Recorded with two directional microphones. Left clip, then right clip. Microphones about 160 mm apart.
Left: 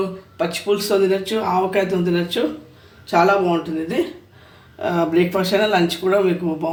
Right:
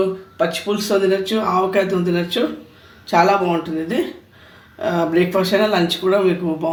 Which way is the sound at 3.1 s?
5° right (ahead or behind).